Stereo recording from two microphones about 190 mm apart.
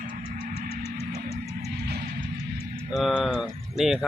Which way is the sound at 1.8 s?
55° right (ahead or behind).